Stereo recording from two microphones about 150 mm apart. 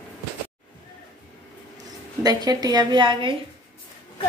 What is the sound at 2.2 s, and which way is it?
A woman's voice, 25° right (ahead or behind).